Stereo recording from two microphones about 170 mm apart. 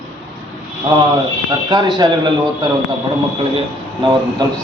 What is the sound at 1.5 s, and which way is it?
Speech, 25° right (ahead or behind).